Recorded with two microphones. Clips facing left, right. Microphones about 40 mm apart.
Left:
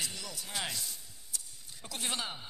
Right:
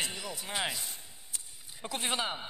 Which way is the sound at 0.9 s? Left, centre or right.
Right.